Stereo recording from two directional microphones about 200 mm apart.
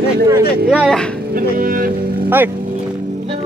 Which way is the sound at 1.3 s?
45° right (ahead or behind).